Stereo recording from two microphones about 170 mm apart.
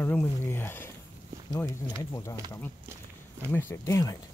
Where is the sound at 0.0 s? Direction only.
10° left (ahead or behind).